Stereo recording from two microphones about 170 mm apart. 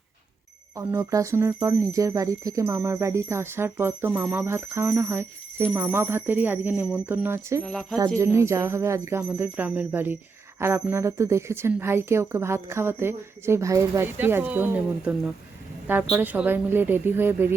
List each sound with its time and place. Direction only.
0.8 s speech: 15° right (ahead or behind)
7.6 s speech: 5° left (ahead or behind)
8.2 s speech: 15° right (ahead or behind)